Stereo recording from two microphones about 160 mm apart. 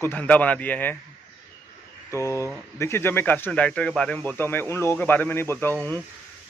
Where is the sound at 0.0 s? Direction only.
10° left (ahead or behind).